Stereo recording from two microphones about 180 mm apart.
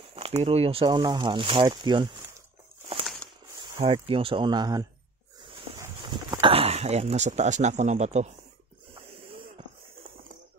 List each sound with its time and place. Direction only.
0.1 s speech: 35° right (ahead or behind)
3.8 s speech: 35° right (ahead or behind)
5.4 s snake: 25° right (ahead or behind)
6.4 s speech: 35° right (ahead or behind)